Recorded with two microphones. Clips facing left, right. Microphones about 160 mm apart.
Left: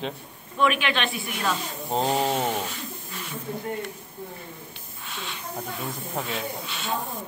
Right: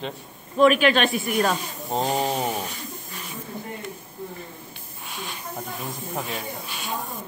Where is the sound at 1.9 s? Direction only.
10° right (ahead or behind).